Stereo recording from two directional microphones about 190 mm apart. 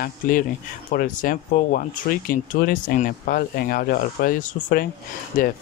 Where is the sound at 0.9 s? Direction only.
45° left (ahead or behind).